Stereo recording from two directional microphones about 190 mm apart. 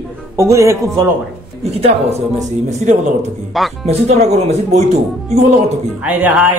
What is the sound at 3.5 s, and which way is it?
Speech, centre (ahead or behind).